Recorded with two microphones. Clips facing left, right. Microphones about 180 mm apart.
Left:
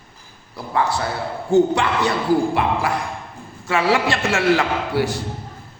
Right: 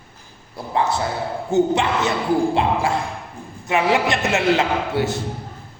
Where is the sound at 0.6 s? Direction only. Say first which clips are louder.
Even; 20° right (ahead or behind).